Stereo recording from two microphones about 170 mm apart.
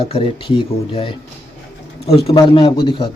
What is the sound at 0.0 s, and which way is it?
Speech, 35° left (ahead or behind).